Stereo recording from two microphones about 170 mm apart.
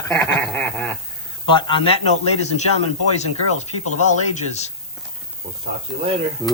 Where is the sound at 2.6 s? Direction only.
40° left (ahead or behind).